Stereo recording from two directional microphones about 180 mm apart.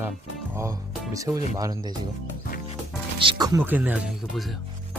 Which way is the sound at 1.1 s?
20° right (ahead or behind).